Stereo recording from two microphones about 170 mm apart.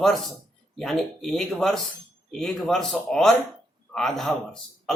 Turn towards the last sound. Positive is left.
turn(degrees=5)  # may be behind; listen again after turning